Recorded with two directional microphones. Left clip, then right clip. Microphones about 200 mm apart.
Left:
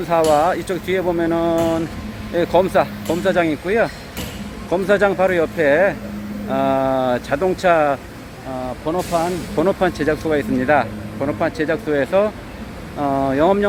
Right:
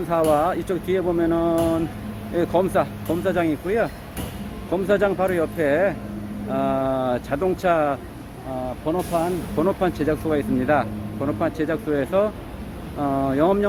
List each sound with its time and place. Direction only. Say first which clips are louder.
0.1 s speech: left 5 dB; 15° left (ahead or behind)
0.7 s speech: left 3 dB; 5° left (ahead or behind)